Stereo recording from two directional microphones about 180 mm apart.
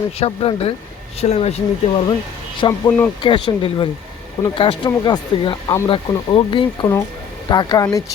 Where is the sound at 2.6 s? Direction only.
20° left (ahead or behind).